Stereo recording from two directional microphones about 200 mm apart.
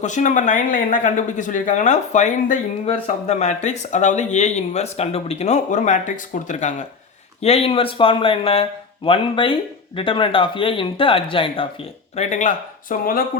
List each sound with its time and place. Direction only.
0.0 s speech: 40° left (ahead or behind)
12.1 s speech: 35° left (ahead or behind)